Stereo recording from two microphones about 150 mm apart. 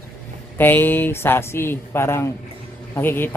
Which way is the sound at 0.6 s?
15° left (ahead or behind).